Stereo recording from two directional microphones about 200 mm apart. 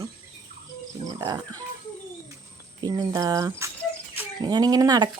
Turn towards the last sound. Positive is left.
turn(degrees=-20)  # may be behind; listen again after turning